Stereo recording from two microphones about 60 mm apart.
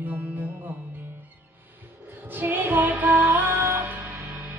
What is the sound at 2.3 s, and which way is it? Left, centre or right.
Music, right.